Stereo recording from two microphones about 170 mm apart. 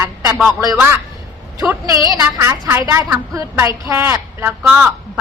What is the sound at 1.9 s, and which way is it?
A woman's voice, 20° right (ahead or behind).